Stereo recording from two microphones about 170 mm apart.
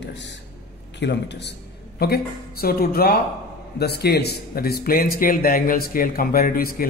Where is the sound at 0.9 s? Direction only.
90° left.